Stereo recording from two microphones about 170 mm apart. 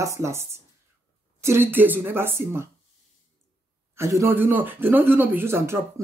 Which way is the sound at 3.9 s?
15° right (ahead or behind).